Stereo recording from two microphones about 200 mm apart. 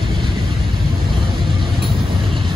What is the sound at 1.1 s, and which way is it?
Vehicle, 25° right (ahead or behind).